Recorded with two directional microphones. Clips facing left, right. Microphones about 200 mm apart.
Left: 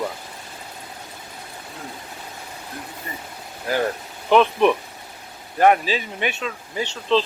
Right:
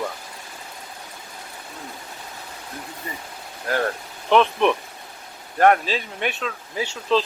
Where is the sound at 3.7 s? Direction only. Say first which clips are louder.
Left 1 dB; 5° left (ahead or behind).